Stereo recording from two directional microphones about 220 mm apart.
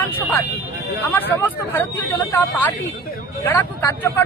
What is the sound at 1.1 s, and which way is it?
Speech, 10° left (ahead or behind).